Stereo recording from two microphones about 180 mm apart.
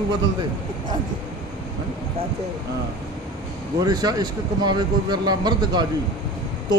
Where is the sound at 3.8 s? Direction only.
20° right (ahead or behind).